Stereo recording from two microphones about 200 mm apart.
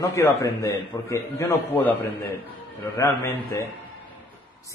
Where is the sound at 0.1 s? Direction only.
15° left (ahead or behind).